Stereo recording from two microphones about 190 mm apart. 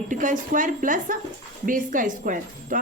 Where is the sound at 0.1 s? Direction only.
45° right (ahead or behind).